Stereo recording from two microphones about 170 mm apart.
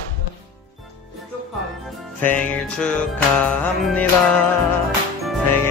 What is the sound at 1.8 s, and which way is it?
Music, 10° left (ahead or behind).